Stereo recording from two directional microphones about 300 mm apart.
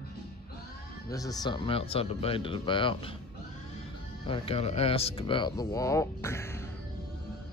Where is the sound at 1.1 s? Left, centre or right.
Centre.